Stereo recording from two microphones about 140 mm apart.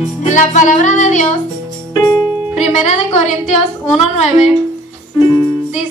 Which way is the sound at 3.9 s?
50° left (ahead or behind).